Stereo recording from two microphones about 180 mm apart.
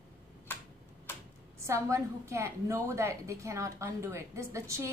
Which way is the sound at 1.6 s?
15° right (ahead or behind).